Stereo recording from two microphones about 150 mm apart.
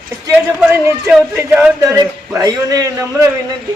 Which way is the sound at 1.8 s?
20° right (ahead or behind).